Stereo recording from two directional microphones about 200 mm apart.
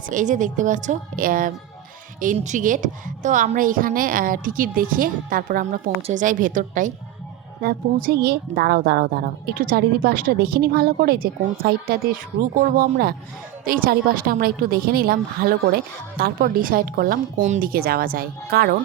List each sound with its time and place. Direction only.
0.1 s a woman's voice: 40° right (ahead or behind)